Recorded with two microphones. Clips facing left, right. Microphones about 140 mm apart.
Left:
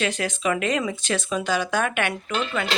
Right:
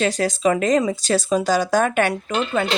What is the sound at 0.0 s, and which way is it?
Speech, 35° right (ahead or behind).